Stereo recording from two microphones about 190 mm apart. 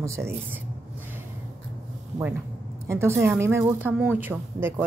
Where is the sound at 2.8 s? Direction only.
15° right (ahead or behind).